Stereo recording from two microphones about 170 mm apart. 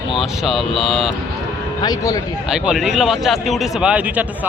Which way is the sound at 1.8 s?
20° left (ahead or behind).